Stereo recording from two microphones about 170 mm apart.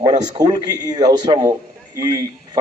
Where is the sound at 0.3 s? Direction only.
25° right (ahead or behind).